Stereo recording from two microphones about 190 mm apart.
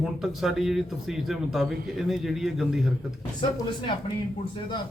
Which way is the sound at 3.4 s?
25° left (ahead or behind).